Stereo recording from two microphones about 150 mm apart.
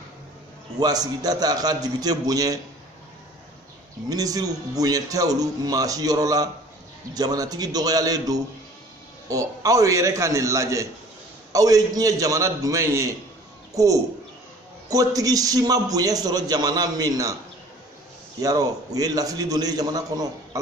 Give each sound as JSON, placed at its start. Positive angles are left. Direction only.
{"t": 0.7, "sound": "a man's voice", "side_deg": -25}
{"t": 4.1, "sound": "a man's voice", "side_deg": -25}
{"t": 18.4, "sound": "a man's voice", "side_deg": -25}